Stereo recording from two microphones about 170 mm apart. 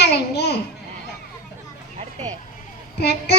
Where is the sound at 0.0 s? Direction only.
75° left (ahead or behind).